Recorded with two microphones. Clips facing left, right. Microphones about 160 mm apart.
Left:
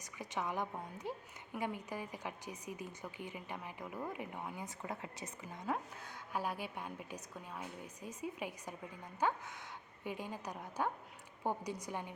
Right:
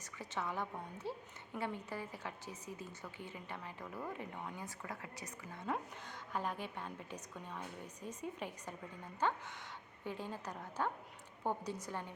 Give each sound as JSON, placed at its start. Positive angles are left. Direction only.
{"t": 0.0, "sound": "a woman's voice", "side_deg": 15}
{"t": 5.6, "sound": "a woman's voice", "side_deg": 5}